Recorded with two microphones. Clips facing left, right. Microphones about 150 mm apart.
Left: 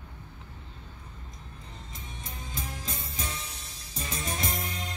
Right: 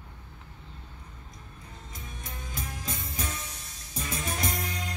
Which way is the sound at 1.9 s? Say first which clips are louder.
Right 1 dB; 25° left (ahead or behind).